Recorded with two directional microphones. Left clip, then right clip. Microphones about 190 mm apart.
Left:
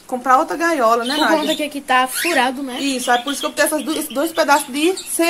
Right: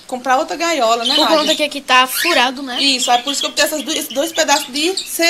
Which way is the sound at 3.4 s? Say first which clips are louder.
Right 1 dB; 40° left (ahead or behind).